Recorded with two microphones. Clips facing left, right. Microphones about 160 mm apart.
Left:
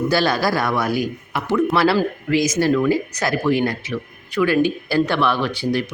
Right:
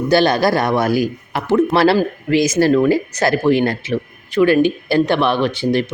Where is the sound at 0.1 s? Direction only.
20° right (ahead or behind).